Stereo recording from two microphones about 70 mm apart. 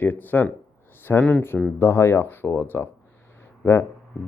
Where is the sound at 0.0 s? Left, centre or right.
Left.